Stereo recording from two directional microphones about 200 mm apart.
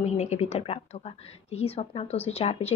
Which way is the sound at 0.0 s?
35° left (ahead or behind).